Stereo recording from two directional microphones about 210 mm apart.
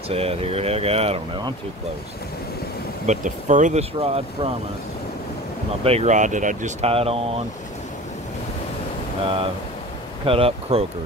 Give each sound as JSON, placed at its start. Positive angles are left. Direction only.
{"t": 0.1, "sound": "speech", "side_deg": -30}
{"t": 3.1, "sound": "speech", "side_deg": -35}
{"t": 5.9, "sound": "speech", "side_deg": -30}
{"t": 10.2, "sound": "speech", "side_deg": -25}